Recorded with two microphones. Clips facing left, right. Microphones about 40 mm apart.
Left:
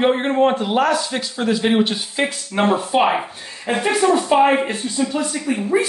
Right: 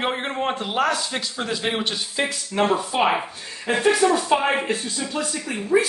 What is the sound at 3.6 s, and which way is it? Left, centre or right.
Speech, left.